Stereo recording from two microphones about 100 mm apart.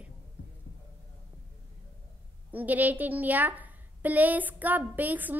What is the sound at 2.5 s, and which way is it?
A woman's voice, 15° right (ahead or behind).